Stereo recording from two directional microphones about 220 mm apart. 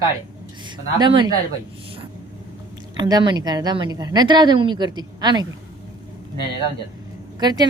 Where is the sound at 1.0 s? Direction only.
20° right (ahead or behind).